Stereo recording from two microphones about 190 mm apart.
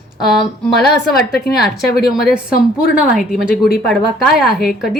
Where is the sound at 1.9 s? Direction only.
55° left (ahead or behind).